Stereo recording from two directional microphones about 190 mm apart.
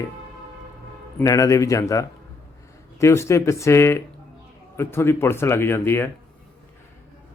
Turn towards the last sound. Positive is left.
turn(degrees=10)  # may be behind; listen again after turning